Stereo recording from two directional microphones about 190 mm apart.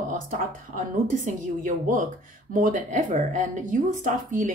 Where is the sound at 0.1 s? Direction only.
45° right (ahead or behind).